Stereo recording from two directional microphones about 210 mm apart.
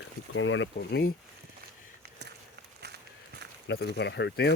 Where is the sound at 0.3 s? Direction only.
65° left (ahead or behind); by 1.1 s 50° left (ahead or behind).